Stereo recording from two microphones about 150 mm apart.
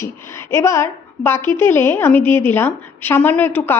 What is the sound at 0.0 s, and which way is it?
A woman's voice, 20° left (ahead or behind).